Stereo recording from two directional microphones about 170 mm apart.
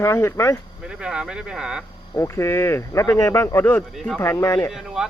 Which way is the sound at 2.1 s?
15° left (ahead or behind).